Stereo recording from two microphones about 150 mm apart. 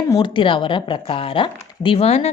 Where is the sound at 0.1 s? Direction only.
35° left (ahead or behind).